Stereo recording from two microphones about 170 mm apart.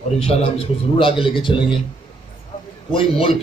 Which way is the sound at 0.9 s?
30° left (ahead or behind).